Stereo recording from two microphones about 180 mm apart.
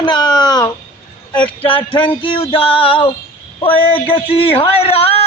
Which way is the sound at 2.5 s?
30° left (ahead or behind).